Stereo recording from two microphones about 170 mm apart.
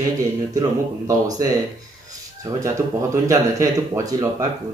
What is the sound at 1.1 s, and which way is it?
Speech, 20° right (ahead or behind).